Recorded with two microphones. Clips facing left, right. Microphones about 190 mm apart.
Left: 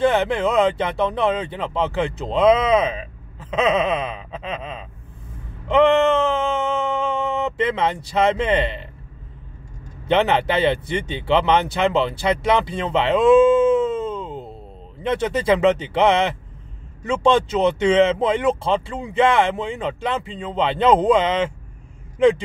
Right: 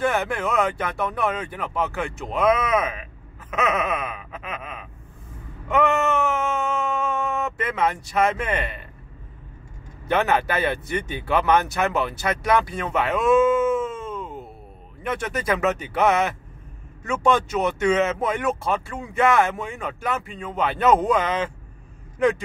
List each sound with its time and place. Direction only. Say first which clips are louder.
0.0 s speech: left 5 dB; 30° left (ahead or behind)
5.7 s a sound: left 6 dB; 30° left (ahead or behind)
7.3 s speech: left 4 dB; 30° left (ahead or behind)
10.0 s speech: left 3 dB; 25° left (ahead or behind)